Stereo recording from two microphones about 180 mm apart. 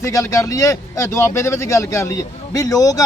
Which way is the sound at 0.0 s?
20° left (ahead or behind).